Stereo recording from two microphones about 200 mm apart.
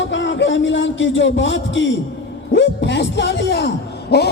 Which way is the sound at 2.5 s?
60° left (ahead or behind).